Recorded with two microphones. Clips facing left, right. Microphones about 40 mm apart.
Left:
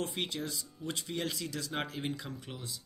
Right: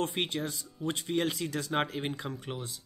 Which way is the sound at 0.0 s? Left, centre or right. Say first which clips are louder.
Right 4 dB; right.